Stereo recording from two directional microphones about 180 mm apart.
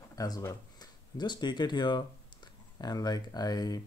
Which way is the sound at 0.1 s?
20° left (ahead or behind).